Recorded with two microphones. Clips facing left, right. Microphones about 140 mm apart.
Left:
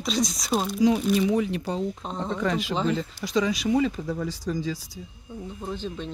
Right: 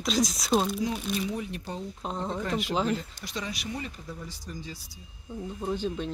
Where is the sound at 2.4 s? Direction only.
90° left.